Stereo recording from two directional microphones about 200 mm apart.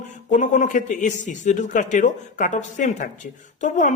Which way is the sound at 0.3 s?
40° left (ahead or behind).